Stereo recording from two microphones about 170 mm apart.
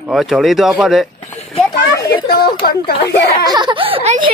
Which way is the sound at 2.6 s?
65° left (ahead or behind).